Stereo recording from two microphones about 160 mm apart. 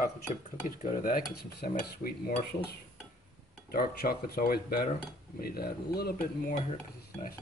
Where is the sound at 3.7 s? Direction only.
70° left (ahead or behind).